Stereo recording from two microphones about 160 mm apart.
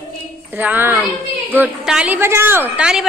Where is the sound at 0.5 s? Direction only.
10° right (ahead or behind).